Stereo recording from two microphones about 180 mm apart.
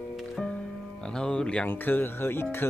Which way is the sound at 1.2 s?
5° left (ahead or behind).